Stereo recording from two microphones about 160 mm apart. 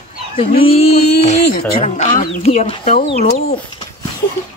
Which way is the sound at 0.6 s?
40° left (ahead or behind).